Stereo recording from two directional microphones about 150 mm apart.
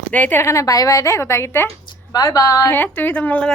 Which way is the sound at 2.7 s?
15° left (ahead or behind).